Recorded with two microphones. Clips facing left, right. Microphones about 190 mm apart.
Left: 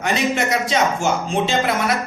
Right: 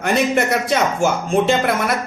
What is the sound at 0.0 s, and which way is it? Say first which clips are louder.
Speech: right 3 dB; 55° right (ahead or behind).